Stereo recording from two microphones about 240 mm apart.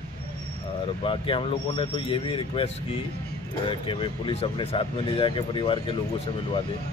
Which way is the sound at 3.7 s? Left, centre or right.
Left.